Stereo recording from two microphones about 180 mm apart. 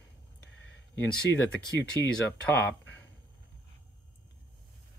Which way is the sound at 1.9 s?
15° left (ahead or behind).